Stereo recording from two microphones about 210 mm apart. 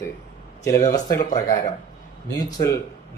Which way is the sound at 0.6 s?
15° left (ahead or behind).